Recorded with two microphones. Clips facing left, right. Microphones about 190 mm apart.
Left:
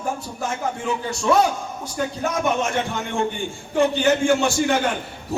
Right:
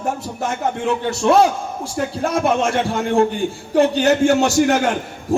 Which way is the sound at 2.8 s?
35° right (ahead or behind).